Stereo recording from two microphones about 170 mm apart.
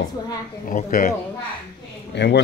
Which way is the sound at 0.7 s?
55° left (ahead or behind).